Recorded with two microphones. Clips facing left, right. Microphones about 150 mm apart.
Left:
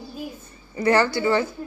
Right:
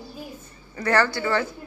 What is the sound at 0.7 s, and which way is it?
Speech, 15° left (ahead or behind).